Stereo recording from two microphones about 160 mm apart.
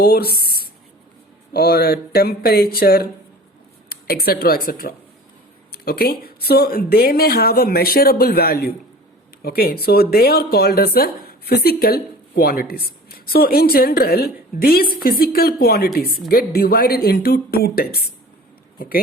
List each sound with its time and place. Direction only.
0.0 s speech: 70° left (ahead or behind)